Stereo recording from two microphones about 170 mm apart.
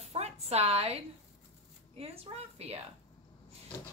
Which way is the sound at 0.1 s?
40° right (ahead or behind).